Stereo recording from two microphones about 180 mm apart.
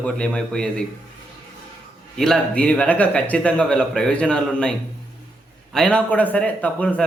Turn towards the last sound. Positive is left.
turn(degrees=10)  # may be behind; listen again after turning